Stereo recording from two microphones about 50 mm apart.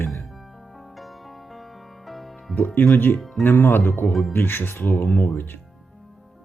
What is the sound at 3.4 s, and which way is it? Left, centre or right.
Speech, left.